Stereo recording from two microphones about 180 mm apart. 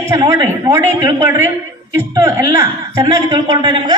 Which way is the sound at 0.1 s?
15° right (ahead or behind).